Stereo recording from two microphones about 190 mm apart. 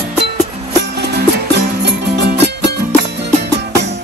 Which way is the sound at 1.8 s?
60° right (ahead or behind).